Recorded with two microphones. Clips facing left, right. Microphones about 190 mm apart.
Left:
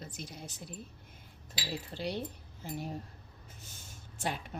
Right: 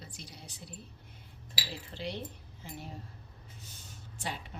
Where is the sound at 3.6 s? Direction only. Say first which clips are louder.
Right 1 dB; 45° left (ahead or behind).